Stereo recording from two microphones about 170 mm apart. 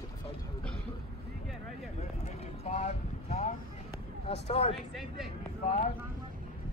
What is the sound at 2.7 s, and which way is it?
Vehicle, 45° left (ahead or behind).